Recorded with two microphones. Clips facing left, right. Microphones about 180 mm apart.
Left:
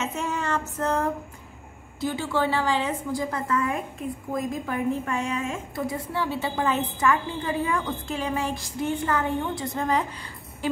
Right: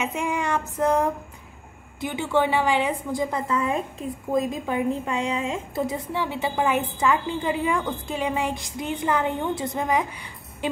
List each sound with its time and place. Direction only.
0.0 s a woman's voice: 15° right (ahead or behind)